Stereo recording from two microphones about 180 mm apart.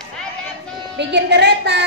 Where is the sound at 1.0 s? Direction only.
75° right (ahead or behind).